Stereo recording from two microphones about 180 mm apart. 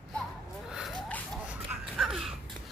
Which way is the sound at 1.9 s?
Centre (ahead or behind).